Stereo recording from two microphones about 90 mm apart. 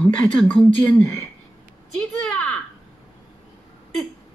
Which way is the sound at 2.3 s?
10° left (ahead or behind).